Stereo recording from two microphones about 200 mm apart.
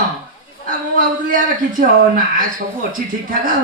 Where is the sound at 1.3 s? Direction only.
40° right (ahead or behind).